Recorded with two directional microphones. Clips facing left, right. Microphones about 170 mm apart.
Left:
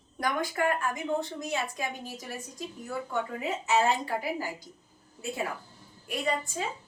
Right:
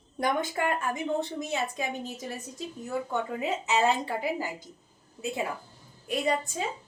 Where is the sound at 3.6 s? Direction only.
20° right (ahead or behind).